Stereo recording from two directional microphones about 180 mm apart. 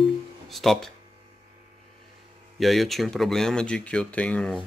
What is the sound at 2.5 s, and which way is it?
Speech, centre (ahead or behind).